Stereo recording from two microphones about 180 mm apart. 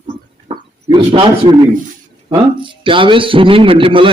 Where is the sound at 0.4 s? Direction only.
25° right (ahead or behind).